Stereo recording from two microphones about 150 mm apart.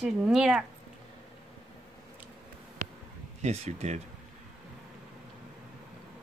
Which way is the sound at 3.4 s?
45° right (ahead or behind).